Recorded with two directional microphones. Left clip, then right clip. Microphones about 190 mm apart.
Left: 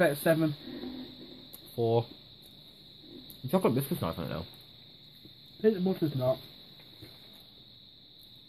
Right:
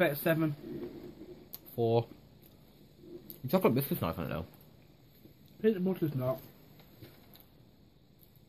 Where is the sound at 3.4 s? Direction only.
10° right (ahead or behind).